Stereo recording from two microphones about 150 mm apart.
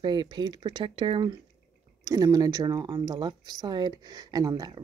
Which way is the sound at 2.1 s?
25° right (ahead or behind).